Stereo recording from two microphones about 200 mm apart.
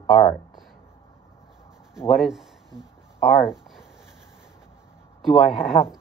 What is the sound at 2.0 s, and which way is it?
Speech, centre (ahead or behind).